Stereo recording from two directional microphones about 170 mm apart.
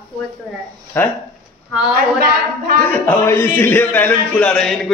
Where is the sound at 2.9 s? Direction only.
10° left (ahead or behind).